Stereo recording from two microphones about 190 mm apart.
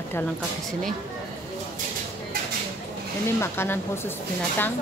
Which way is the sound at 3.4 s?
10° left (ahead or behind).